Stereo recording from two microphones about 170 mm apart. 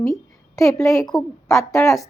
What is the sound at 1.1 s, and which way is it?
Speech, 25° left (ahead or behind).